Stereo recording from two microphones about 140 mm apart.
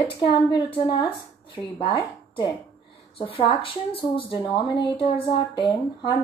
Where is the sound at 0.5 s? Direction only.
35° left (ahead or behind).